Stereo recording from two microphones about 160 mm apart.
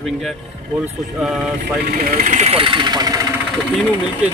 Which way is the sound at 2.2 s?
45° right (ahead or behind).